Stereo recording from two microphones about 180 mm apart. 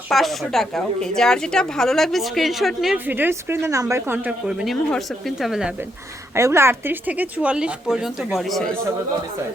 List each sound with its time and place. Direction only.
0.1 s a woman's voice: centre (ahead or behind)
6.3 s a woman's voice: 15° right (ahead or behind); by 8.7 s centre (ahead or behind)